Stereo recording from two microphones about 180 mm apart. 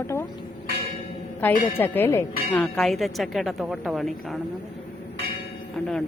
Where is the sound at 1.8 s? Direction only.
10° left (ahead or behind).